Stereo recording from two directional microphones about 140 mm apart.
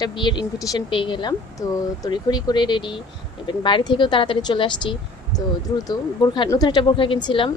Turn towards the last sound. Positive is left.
turn(degrees=35)  # may be behind; listen again after turning